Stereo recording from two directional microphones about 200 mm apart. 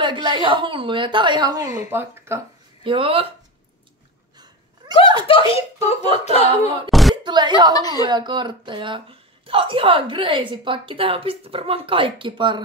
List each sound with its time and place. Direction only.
0.0 s a woman's voice: 25° right (ahead or behind)
2.8 s a woman's voice: 25° right (ahead or behind)
4.8 s a sound: 20° right (ahead or behind)
5.2 s speech: 30° left (ahead or behind)
6.9 s a sound: centre (ahead or behind)
7.2 s a woman's voice: 20° right (ahead or behind)
7.7 s speech: 20° left (ahead or behind)
8.1 s a woman's voice: 20° right (ahead or behind)